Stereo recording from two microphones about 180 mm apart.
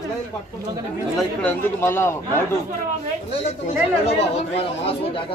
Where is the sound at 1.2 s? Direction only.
10° left (ahead or behind).